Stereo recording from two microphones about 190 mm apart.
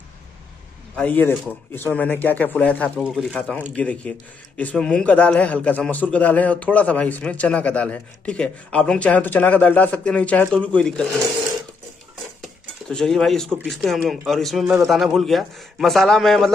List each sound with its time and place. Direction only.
0.9 s a man's voice: 10° left (ahead or behind)
12.4 s dishes: 5° left (ahead or behind)
13.7 s a man's voice: centre (ahead or behind)